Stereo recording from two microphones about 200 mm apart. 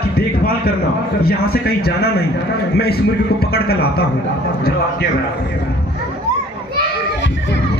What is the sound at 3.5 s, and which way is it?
Speech, 50° left (ahead or behind).